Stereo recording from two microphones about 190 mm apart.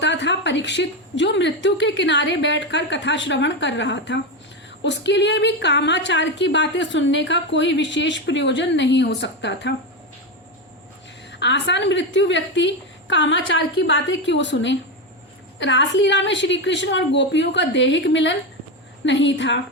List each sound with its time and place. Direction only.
0.0 s a woman's voice: 65° left (ahead or behind)
11.3 s a woman's voice: 65° left (ahead or behind)